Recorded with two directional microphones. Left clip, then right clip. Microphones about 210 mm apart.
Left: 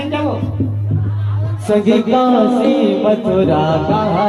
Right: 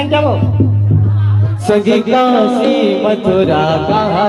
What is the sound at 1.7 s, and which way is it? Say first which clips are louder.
Music: right 2 dB; 50° right (ahead or behind).